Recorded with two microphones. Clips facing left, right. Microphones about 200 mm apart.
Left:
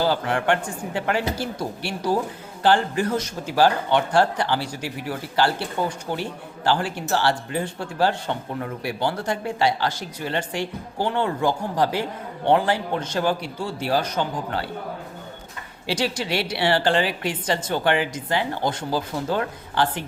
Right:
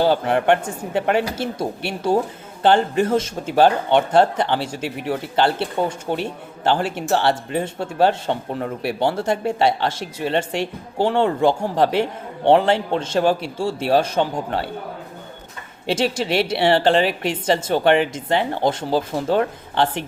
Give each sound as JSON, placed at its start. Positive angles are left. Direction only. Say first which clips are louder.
{"t": 0.0, "sound": "speech", "louder": "right 5 dB", "side_deg": -20}
{"t": 15.9, "sound": "speech", "louder": "right 4 dB", "side_deg": -25}